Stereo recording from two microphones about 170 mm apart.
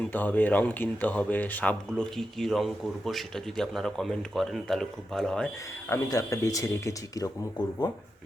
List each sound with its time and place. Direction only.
0.0 s speech: 10° left (ahead or behind)
5.9 s speech: 20° left (ahead or behind)